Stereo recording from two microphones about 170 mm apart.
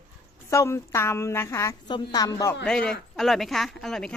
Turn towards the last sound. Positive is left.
turn(degrees=0)  # may be behind; listen again after turning